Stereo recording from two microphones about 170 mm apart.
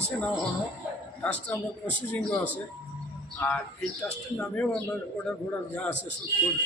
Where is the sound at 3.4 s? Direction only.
10° left (ahead or behind).